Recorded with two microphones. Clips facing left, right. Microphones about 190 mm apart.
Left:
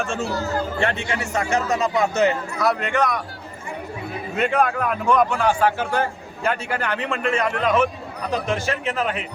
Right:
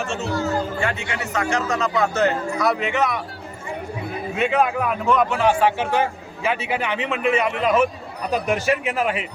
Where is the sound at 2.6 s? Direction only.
Centre (ahead or behind).